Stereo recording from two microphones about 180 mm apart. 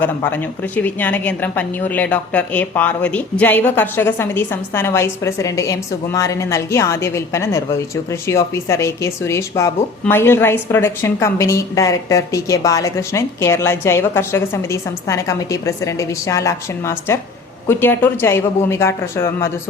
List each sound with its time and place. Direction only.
0.0 s speech: 10° left (ahead or behind)